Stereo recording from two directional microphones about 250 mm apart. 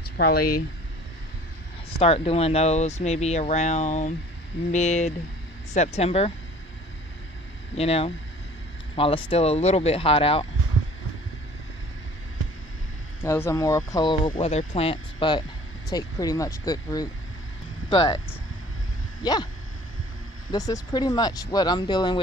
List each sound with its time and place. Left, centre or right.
0.2 s speech: left
1.9 s speech: left
7.7 s speech: left
13.2 s speech: centre
20.5 s speech: centre